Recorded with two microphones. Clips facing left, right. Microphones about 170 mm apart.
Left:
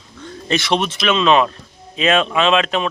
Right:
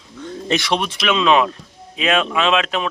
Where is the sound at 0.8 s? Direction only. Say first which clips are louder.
Even; 10° right (ahead or behind).